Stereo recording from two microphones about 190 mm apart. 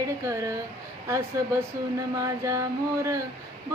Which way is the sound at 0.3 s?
15° right (ahead or behind).